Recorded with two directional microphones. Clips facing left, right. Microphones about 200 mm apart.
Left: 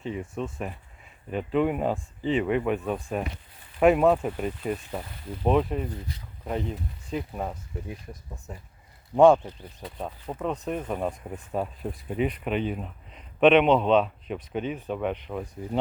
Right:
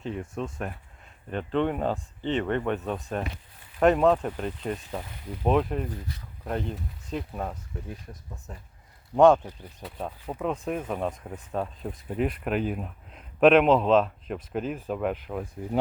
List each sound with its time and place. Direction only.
0.0 s speech: centre (ahead or behind)
10.0 s speech: 5° right (ahead or behind)